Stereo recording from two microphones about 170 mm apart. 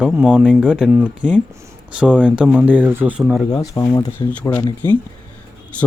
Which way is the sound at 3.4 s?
20° left (ahead or behind).